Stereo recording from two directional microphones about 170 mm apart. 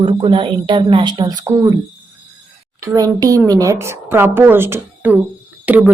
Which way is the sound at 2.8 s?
20° right (ahead or behind).